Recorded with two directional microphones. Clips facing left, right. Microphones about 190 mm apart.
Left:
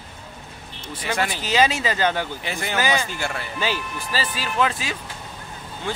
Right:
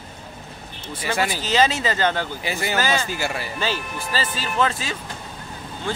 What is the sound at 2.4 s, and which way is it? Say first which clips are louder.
Speech: right 2 dB; 5° right (ahead or behind).